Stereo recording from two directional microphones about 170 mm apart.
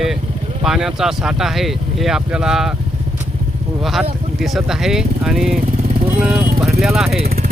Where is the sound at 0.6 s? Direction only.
5° right (ahead or behind).